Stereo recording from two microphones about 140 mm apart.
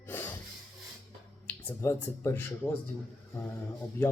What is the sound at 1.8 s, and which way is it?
Speech, 15° left (ahead or behind).